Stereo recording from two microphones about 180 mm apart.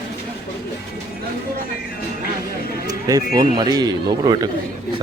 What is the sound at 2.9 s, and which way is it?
A man's voice, 20° right (ahead or behind).